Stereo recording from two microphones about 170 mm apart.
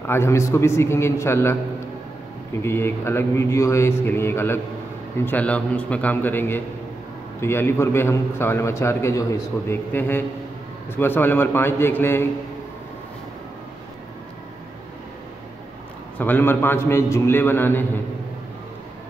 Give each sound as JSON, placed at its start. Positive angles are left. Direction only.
{"t": 0.0, "sound": "a man's voice", "side_deg": 15}
{"t": 2.6, "sound": "a man's voice", "side_deg": 15}
{"t": 16.2, "sound": "a man's voice", "side_deg": 10}